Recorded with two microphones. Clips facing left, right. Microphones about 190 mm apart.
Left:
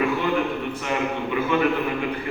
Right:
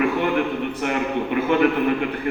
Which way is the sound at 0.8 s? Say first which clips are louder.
Right 3 dB; 55° right (ahead or behind).